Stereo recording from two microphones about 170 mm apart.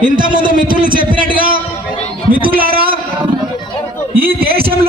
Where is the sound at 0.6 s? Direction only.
55° right (ahead or behind).